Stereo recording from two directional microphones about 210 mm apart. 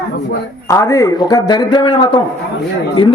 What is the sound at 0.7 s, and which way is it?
Speech, 15° left (ahead or behind).